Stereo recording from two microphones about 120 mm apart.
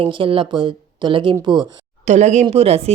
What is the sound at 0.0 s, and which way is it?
Speech, 45° right (ahead or behind).